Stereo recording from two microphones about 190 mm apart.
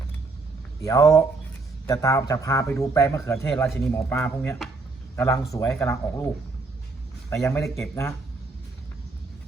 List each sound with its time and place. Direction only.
0.8 s a man's voice: 20° left (ahead or behind)
7.3 s a man's voice: 15° left (ahead or behind)